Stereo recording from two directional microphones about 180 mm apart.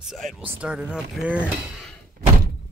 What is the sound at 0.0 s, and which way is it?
Speech, centre (ahead or behind).